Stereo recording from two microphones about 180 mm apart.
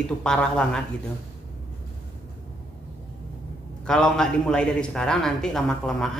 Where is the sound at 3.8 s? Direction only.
5° left (ahead or behind).